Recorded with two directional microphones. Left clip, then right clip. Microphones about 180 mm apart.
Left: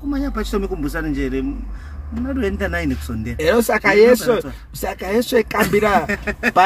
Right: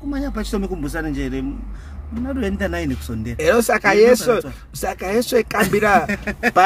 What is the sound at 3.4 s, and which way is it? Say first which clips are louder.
Speech: even; 10° left (ahead or behind).